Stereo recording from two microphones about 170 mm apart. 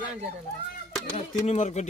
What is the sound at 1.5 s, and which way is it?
Speech, 40° left (ahead or behind).